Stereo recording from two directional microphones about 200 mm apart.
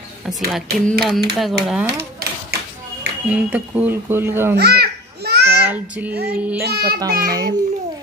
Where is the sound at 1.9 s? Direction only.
55° right (ahead or behind).